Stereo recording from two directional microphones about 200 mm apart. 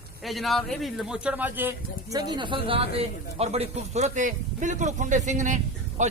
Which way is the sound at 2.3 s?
25° right (ahead or behind).